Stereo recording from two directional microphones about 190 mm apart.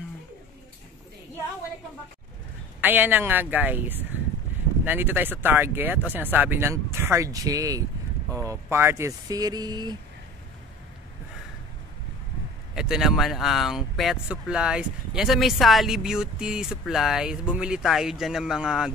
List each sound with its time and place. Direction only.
2.8 s speech: 10° right (ahead or behind)
12.7 s speech: 5° right (ahead or behind)